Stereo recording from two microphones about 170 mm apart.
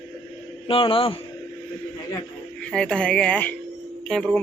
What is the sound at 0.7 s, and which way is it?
Speech, 30° left (ahead or behind).